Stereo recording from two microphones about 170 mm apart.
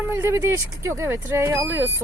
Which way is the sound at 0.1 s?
15° right (ahead or behind).